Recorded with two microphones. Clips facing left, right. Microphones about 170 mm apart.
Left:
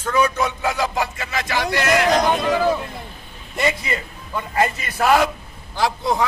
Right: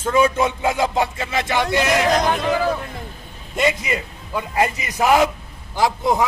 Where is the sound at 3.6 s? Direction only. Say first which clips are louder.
Right 2 dB; 15° right (ahead or behind).